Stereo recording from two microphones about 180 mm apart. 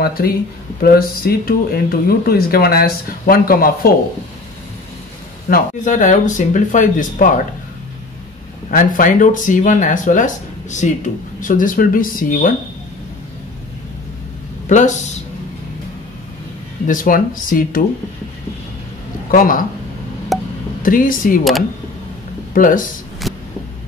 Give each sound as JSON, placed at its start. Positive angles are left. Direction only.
{"t": 0.0, "sound": "speech", "side_deg": 55}
{"t": 5.5, "sound": "speech", "side_deg": 45}
{"t": 8.6, "sound": "speech", "side_deg": 50}
{"t": 16.8, "sound": "speech", "side_deg": 50}
{"t": 19.3, "sound": "speech", "side_deg": 50}
{"t": 20.3, "sound": "a sound", "side_deg": 0}
{"t": 20.8, "sound": "speech", "side_deg": 50}
{"t": 22.5, "sound": "speech", "side_deg": 50}
{"t": 23.2, "sound": "heart sounds", "side_deg": 0}